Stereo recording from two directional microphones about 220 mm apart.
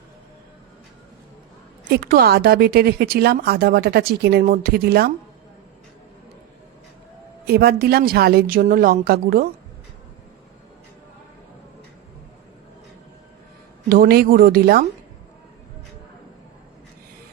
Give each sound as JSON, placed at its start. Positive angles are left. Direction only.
{"t": 1.9, "sound": "speech", "side_deg": -45}
{"t": 7.4, "sound": "speech", "side_deg": -45}
{"t": 13.9, "sound": "speech", "side_deg": -45}